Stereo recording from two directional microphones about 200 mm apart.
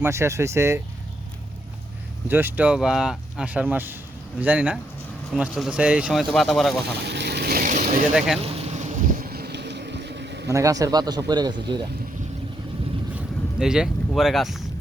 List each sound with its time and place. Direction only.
0.0 s speech: 15° right (ahead or behind)
2.2 s speech: 10° right (ahead or behind)
6.9 s vehicle: 55° right (ahead or behind); by 8.0 s 40° right (ahead or behind)
8.4 s boat: 35° right (ahead or behind); by 10.5 s 60° right (ahead or behind)
10.5 s speech: 15° right (ahead or behind)
13.1 s a sound: 5° right (ahead or behind)
14.1 s speech: centre (ahead or behind)